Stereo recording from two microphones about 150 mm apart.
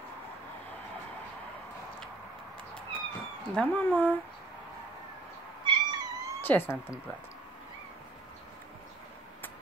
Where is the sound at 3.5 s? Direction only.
10° left (ahead or behind).